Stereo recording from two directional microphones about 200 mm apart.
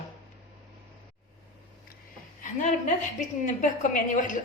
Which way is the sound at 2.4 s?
40° left (ahead or behind).